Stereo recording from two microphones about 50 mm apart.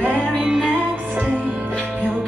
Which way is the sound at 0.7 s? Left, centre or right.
Right.